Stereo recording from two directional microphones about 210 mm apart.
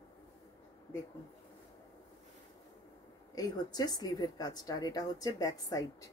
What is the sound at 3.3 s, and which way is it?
Speech, 20° left (ahead or behind).